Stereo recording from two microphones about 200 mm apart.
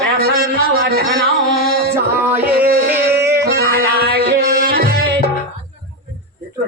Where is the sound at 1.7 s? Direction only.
50° right (ahead or behind).